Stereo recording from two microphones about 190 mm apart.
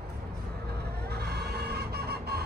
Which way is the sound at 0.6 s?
55° right (ahead or behind).